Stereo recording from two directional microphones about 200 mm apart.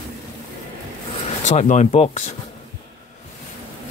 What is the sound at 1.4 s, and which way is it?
Speech, 35° left (ahead or behind).